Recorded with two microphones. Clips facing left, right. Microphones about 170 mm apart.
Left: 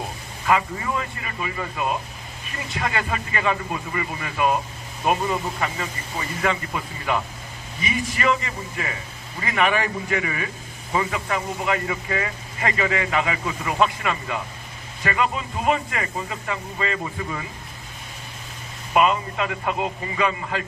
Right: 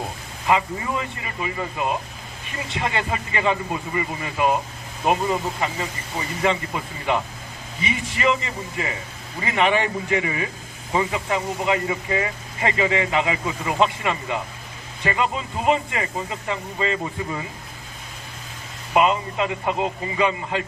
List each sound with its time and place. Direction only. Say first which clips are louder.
0.4 s speech: even; 20° right (ahead or behind)
18.9 s speech: right 1 dB; 25° right (ahead or behind)